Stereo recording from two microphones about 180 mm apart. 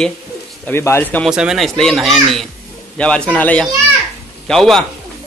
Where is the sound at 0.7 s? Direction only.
15° left (ahead or behind).